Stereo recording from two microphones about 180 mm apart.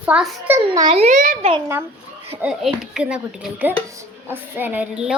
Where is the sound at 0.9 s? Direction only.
40° right (ahead or behind).